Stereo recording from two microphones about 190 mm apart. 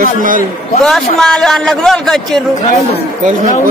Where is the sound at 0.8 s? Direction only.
Centre (ahead or behind).